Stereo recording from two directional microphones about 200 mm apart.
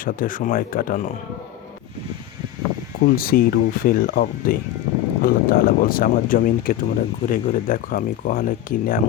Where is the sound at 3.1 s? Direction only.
45° left (ahead or behind).